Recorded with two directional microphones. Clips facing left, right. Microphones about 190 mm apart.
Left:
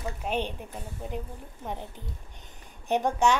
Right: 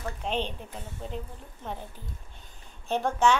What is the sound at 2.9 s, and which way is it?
Speech, 15° left (ahead or behind).